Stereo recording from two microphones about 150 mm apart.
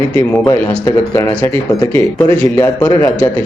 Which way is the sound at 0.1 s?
10° left (ahead or behind).